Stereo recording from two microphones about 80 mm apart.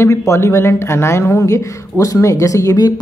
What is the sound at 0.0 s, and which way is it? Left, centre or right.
A woman's voice, left.